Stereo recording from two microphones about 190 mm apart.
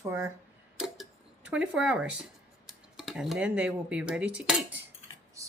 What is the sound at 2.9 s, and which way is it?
Speech, centre (ahead or behind).